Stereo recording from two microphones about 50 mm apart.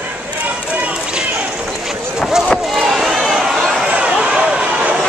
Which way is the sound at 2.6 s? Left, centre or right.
Centre.